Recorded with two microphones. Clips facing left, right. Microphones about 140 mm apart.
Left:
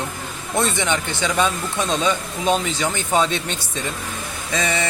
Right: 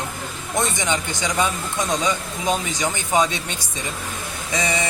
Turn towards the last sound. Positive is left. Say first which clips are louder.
# left 1 dB
turn(degrees=-15)  # may be behind; listen again after turning